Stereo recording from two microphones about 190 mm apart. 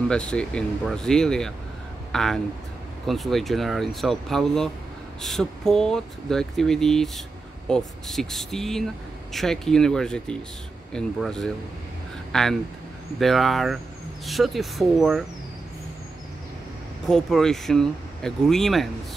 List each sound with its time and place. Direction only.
0.1 s speech: 5° left (ahead or behind)
17.1 s speech: 5° left (ahead or behind)